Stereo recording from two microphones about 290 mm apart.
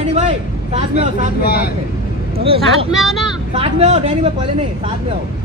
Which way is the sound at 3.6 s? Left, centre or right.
Right.